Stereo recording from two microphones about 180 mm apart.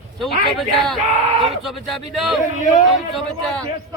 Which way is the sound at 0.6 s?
Centre (ahead or behind).